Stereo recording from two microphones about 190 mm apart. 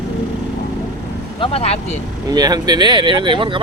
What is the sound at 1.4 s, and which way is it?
Speech, 30° left (ahead or behind).